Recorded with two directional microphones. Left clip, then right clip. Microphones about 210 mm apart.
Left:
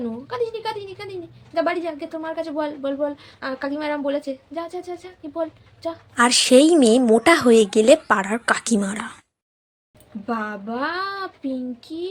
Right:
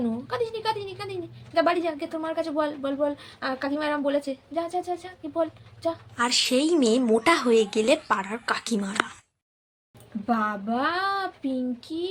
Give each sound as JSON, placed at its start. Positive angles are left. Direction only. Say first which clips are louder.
{"t": 0.0, "sound": "a woman's voice", "louder": "left 2 dB", "side_deg": 10}
{"t": 6.1, "sound": "a woman's voice", "louder": "left 10 dB", "side_deg": 30}
{"t": 10.2, "sound": "speech", "louder": "right 1 dB", "side_deg": 10}